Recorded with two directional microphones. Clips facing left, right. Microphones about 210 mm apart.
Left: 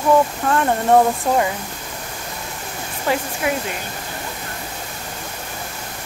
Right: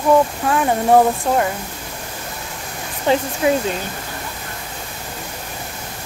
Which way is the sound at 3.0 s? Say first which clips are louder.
Right 5 dB; 25° right (ahead or behind).